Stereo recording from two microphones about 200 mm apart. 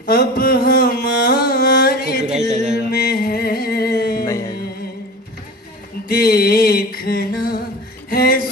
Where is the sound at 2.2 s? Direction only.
35° right (ahead or behind).